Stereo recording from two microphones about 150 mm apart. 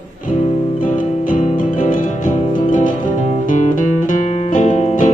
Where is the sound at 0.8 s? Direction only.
60° left (ahead or behind).